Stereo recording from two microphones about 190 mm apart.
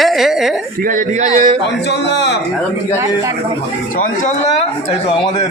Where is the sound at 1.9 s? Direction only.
65° left (ahead or behind).